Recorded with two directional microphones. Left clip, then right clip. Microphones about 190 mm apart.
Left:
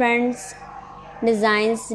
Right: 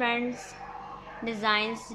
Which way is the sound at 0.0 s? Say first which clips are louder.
Left 9 dB; 25° left (ahead or behind).